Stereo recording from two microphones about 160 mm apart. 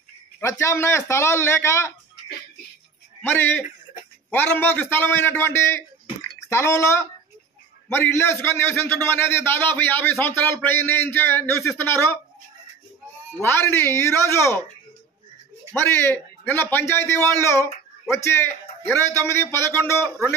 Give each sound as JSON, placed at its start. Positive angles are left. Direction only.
{"t": 0.4, "sound": "a man's voice", "side_deg": 15}
{"t": 3.2, "sound": "a man's voice", "side_deg": 10}
{"t": 13.4, "sound": "a man's voice", "side_deg": 15}
{"t": 15.7, "sound": "a man's voice", "side_deg": 15}